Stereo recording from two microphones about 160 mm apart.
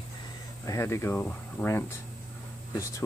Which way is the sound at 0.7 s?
15° left (ahead or behind).